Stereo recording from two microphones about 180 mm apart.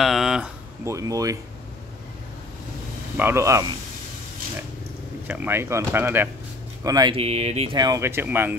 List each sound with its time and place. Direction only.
0.0 s a sound: centre (ahead or behind)
0.8 s speech: 20° right (ahead or behind)
3.2 s speech: 15° right (ahead or behind)
5.2 s speech: 10° right (ahead or behind)
7.2 s speech: 35° right (ahead or behind); by 8.5 s 10° right (ahead or behind)